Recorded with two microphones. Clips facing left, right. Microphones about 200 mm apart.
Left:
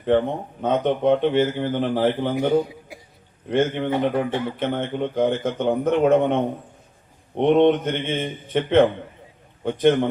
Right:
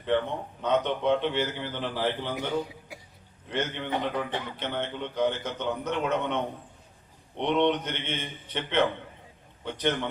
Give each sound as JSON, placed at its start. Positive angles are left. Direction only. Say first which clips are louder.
{"t": 0.0, "sound": "speech", "louder": "left 7 dB", "side_deg": 50}